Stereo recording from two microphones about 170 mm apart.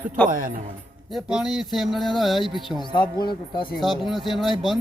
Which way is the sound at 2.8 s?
25° left (ahead or behind).